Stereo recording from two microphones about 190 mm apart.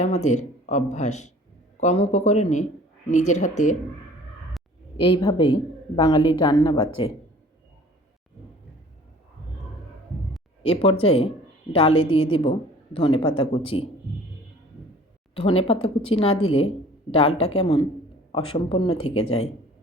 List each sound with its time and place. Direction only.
0.0 s speech: 35° left (ahead or behind)
4.9 s speech: 30° left (ahead or behind)
10.6 s speech: 30° left (ahead or behind)
15.4 s speech: 30° left (ahead or behind)
16.3 s speech: 90° left
16.6 s speech: 30° left (ahead or behind)